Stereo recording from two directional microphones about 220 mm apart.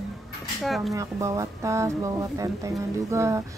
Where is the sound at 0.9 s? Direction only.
15° right (ahead or behind).